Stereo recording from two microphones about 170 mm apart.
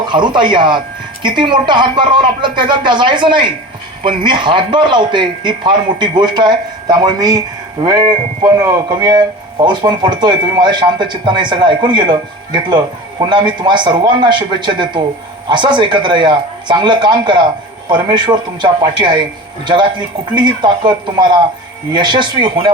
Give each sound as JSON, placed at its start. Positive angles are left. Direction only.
{"t": 0.1, "sound": "a man's voice", "side_deg": -25}